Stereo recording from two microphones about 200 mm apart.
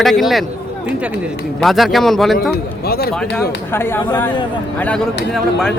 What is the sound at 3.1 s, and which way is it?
A man's voice, 5° left (ahead or behind).